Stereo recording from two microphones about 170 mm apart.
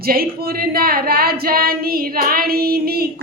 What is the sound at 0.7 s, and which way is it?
Female singing, 60° right (ahead or behind).